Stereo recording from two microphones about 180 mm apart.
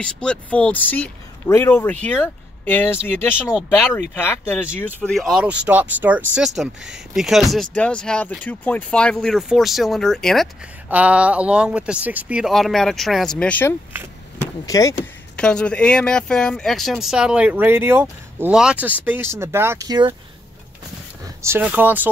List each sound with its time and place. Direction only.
0.0 s speech: 5° left (ahead or behind)
15.3 s speech: 5° left (ahead or behind); by 20.2 s 20° right (ahead or behind)
21.4 s speech: 10° right (ahead or behind)